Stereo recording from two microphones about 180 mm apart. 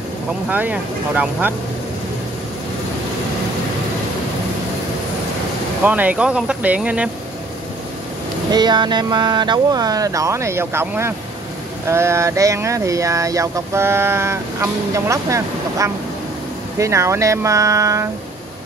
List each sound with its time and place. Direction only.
0.5 s speech: 10° right (ahead or behind)
5.9 s speech: 10° right (ahead or behind)
8.5 s speech: 25° right (ahead or behind)